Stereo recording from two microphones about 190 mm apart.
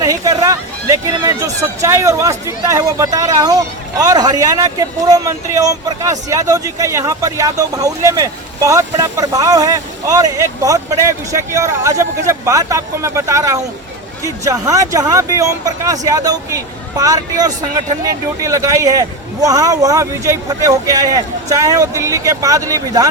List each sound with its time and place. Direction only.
0.0 s speech: 15° right (ahead or behind)